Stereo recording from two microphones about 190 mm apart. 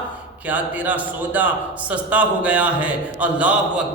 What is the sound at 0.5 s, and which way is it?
A man's voice, 10° right (ahead or behind).